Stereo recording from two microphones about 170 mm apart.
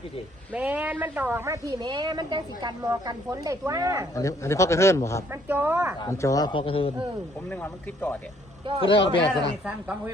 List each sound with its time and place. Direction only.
0.5 s a woman's voice: 10° right (ahead or behind)
4.1 s speech: 20° left (ahead or behind)
5.3 s speech: 10° right (ahead or behind)
6.0 s speech: 20° left (ahead or behind)
7.5 s speech: 10° left (ahead or behind)
8.8 s speech: 30° left (ahead or behind)
9.6 s speech: 5° right (ahead or behind)